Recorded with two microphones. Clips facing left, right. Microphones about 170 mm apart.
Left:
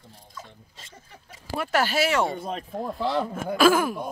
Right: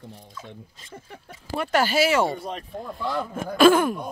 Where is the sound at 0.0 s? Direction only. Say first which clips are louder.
Right 4 dB; 65° right (ahead or behind).